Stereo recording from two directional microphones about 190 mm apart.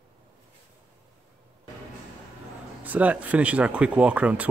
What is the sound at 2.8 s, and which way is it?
Speech, 10° right (ahead or behind).